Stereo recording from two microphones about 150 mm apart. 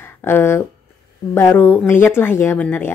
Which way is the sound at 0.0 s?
15° left (ahead or behind).